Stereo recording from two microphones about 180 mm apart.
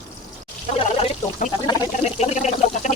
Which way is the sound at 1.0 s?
40° left (ahead or behind).